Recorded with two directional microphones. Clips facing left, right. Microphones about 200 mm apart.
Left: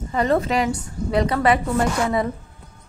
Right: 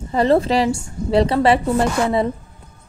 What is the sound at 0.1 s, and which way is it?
A woman's voice, 30° right (ahead or behind).